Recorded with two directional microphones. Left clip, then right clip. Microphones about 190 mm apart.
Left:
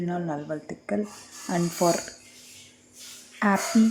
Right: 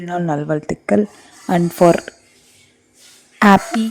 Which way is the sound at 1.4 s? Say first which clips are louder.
Right 11 dB; 35° right (ahead or behind).